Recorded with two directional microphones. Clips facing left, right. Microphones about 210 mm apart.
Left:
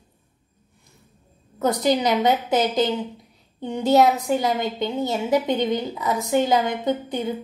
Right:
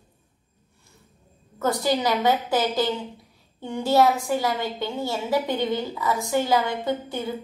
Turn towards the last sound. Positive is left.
turn(degrees=20)  # may be behind; listen again after turning